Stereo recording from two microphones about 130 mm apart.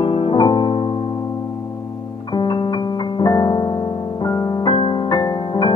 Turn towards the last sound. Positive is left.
turn(degrees=35)  # may be behind; listen again after turning